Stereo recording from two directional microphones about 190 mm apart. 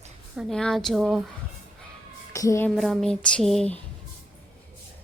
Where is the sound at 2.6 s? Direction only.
Centre (ahead or behind).